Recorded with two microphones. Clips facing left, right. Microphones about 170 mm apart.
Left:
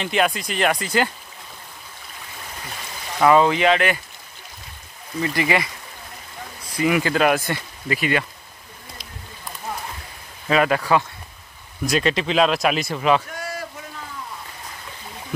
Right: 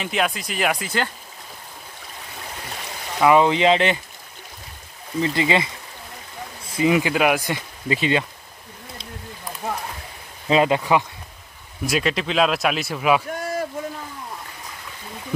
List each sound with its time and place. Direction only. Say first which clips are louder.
0.0 s speech: left 2 dB; centre (ahead or behind)
3.2 s speech: even; 15° right (ahead or behind)
5.2 s speech: right 1 dB; 25° right (ahead or behind)
10.5 s speech: right 1 dB; 20° right (ahead or behind)
11.8 s speech: left 2 dB; 5° right (ahead or behind)
13.4 s a sound: right 5 dB; 50° right (ahead or behind)